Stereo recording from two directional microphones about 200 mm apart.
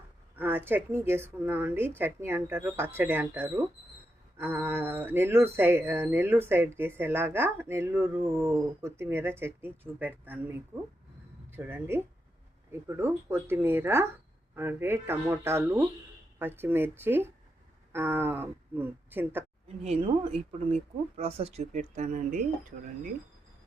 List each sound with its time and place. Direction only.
0.3 s speech: 10° right (ahead or behind)
19.6 s speech: 30° right (ahead or behind)